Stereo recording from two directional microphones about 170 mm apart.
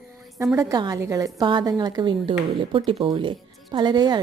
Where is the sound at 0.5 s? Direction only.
20° right (ahead or behind).